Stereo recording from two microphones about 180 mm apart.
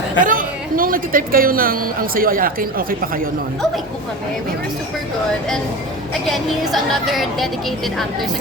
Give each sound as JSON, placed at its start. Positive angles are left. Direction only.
{"t": 0.2, "sound": "a woman's voice", "side_deg": -50}
{"t": 6.2, "sound": "a woman's voice", "side_deg": 0}